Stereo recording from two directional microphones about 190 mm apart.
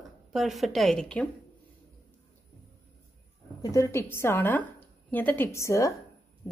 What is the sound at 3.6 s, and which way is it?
A woman's voice, 15° left (ahead or behind).